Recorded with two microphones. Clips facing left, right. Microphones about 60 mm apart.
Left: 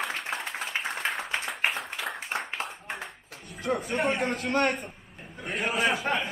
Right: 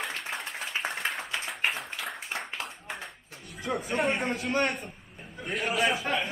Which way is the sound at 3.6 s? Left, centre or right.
Centre.